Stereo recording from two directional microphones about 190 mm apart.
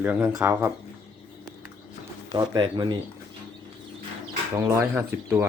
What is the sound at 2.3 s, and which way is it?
Speech, 20° right (ahead or behind).